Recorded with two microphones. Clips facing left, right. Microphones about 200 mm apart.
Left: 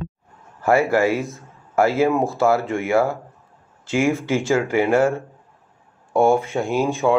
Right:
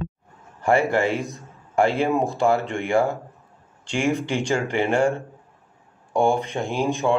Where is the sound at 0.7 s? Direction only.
5° left (ahead or behind).